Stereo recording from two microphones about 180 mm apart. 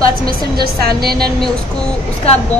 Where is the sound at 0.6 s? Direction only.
60° right (ahead or behind).